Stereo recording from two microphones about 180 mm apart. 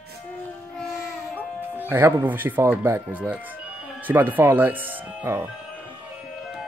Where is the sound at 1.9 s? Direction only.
10° right (ahead or behind).